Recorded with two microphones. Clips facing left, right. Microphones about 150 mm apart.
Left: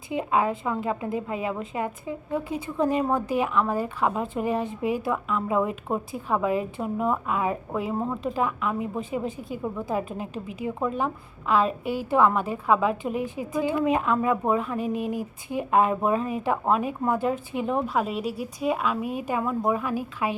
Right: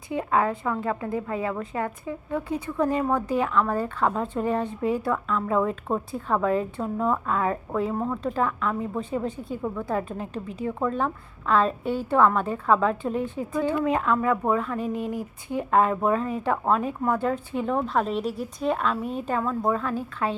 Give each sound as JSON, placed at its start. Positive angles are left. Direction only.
{"t": 0.1, "sound": "a woman's voice", "side_deg": 20}